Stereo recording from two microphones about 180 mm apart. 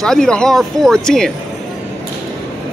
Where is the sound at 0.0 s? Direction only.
5° left (ahead or behind).